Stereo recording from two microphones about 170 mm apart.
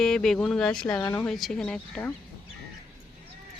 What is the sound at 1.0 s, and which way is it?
Speech, 20° left (ahead or behind).